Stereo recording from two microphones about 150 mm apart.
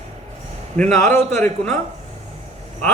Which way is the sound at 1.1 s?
50° right (ahead or behind).